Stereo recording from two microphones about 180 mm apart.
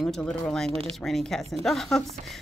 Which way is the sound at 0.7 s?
30° right (ahead or behind).